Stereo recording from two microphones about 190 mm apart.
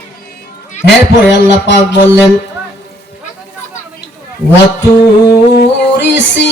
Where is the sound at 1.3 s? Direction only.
65° left (ahead or behind).